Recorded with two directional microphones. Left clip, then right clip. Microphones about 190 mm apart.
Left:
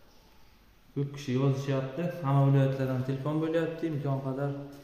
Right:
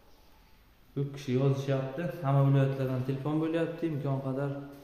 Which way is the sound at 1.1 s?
15° right (ahead or behind).